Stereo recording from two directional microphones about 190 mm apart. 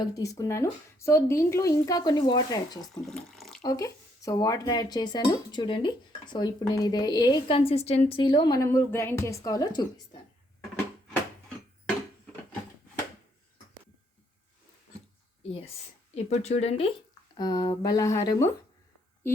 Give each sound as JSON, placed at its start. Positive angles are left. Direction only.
{"t": 0.0, "sound": "speech", "side_deg": 15}
{"t": 2.9, "sound": "speech", "side_deg": 5}
{"t": 3.6, "sound": "speech", "side_deg": 20}
{"t": 15.4, "sound": "speech", "side_deg": 30}
{"t": 17.3, "sound": "speech", "side_deg": 20}